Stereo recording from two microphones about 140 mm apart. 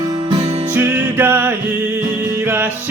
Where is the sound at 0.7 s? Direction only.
15° right (ahead or behind).